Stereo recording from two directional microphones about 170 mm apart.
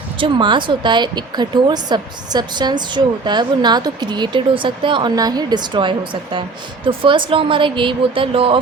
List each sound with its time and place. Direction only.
0.2 s a woman's voice: 30° right (ahead or behind)